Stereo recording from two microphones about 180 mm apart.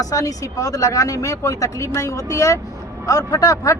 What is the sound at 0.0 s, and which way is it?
A man's voice, 20° left (ahead or behind).